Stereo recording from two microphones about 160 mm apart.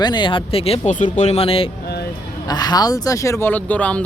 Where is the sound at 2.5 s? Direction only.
25° left (ahead or behind); by 4.0 s 10° left (ahead or behind).